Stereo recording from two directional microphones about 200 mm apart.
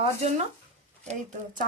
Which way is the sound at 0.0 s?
35° right (ahead or behind).